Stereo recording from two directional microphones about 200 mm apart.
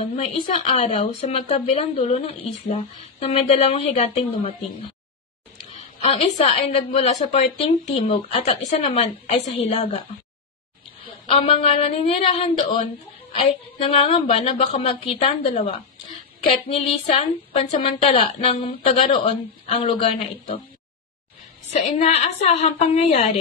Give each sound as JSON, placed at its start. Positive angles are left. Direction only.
{"t": 0.0, "sound": "a woman's voice", "side_deg": 30}
{"t": 6.0, "sound": "a woman's voice", "side_deg": 35}
{"t": 11.2, "sound": "a woman's voice", "side_deg": 30}
{"t": 21.6, "sound": "a woman's voice", "side_deg": 35}